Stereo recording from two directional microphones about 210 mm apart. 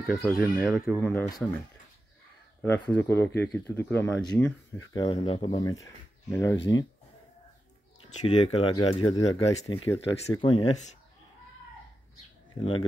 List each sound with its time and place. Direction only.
0.0 s speech: centre (ahead or behind)
2.6 s speech: 10° left (ahead or behind)
4.9 s speech: 25° left (ahead or behind)
8.1 s speech: 30° left (ahead or behind)